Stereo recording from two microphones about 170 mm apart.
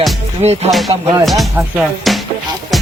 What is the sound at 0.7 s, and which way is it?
Speech, centre (ahead or behind).